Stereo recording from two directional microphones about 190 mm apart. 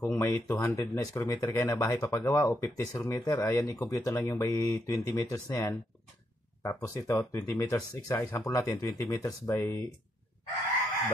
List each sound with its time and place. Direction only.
0.0 s speech: 15° left (ahead or behind)